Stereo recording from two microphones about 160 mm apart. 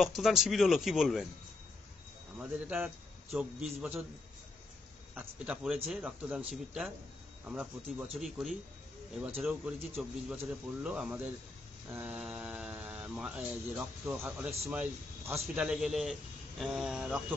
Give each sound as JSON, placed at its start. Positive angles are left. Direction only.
{"t": 0.0, "sound": "a man's voice", "side_deg": 0}
{"t": 2.3, "sound": "a man's voice", "side_deg": -5}
{"t": 5.1, "sound": "a man's voice", "side_deg": -10}